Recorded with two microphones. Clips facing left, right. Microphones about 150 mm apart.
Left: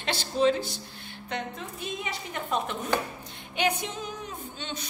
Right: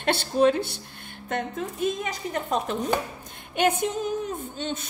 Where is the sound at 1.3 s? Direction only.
50° right (ahead or behind).